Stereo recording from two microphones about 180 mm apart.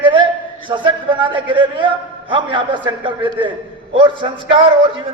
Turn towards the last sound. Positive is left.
turn(degrees=-30)  # may be behind; listen again after turning